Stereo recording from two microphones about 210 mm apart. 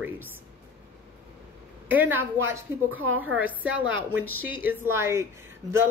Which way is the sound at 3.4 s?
5° right (ahead or behind).